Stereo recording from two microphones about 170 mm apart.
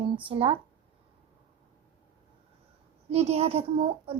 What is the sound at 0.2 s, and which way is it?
Speech, 30° right (ahead or behind).